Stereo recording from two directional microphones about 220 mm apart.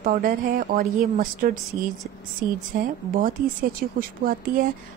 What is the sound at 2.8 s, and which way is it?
A woman's voice, 40° right (ahead or behind).